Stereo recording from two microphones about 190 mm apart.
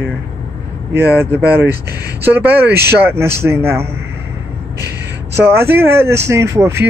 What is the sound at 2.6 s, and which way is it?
Speech, 60° right (ahead or behind).